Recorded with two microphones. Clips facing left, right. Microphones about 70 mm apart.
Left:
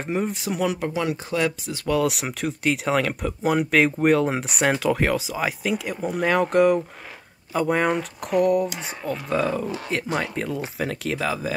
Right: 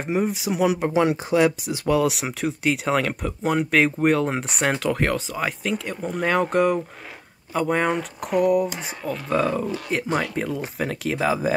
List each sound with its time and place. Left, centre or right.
0.0 s speech: centre
0.7 s speech: right
1.4 s speech: centre
2.0 s speech: centre